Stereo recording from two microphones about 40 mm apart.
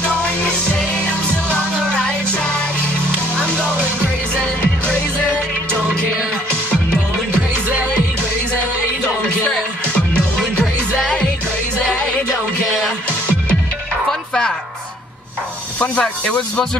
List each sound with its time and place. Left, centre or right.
0.1 s music: left
15.8 s speech: left